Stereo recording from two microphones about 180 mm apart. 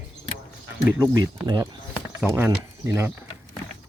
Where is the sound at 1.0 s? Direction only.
20° right (ahead or behind).